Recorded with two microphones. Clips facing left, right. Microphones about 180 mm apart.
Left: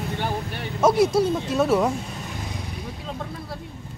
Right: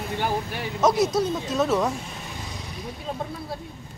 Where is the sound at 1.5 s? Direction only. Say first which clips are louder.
Left 2 dB; 10° left (ahead or behind).